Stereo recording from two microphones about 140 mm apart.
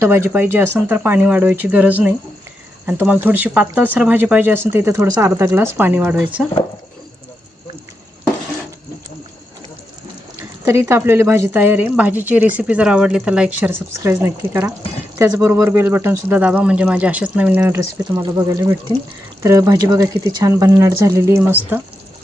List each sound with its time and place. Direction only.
0.0 s a woman's voice: 15° right (ahead or behind)
10.7 s a woman's voice: 15° right (ahead or behind)
17.7 s speech: 25° right (ahead or behind)